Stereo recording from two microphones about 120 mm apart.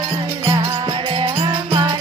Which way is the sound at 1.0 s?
45° right (ahead or behind).